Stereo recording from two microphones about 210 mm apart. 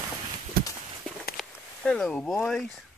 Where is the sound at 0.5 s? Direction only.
45° right (ahead or behind).